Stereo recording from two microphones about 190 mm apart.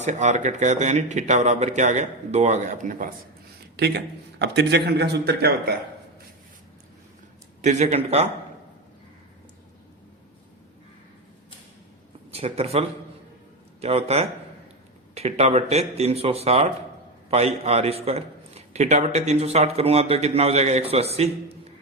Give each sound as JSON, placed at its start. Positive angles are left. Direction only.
{"t": 0.0, "sound": "a man's voice", "side_deg": -40}
{"t": 3.8, "sound": "a man's voice", "side_deg": -60}
{"t": 7.6, "sound": "a man's voice", "side_deg": -40}
{"t": 12.3, "sound": "speech", "side_deg": -30}
{"t": 13.8, "sound": "a man's voice", "side_deg": -35}